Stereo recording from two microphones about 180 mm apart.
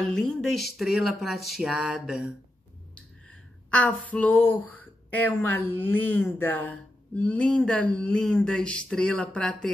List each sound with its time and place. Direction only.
0.1 s speech: centre (ahead or behind)